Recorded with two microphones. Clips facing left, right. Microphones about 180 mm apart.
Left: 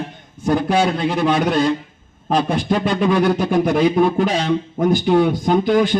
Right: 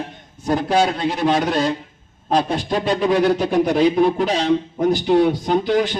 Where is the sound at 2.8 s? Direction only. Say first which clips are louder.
Right 1 dB; 35° right (ahead or behind).